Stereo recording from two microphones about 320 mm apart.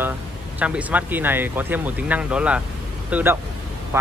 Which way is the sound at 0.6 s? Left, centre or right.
Centre.